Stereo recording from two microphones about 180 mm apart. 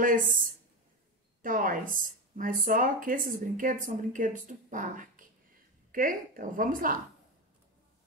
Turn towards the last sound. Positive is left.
turn(degrees=-50)  # may be behind; listen again after turning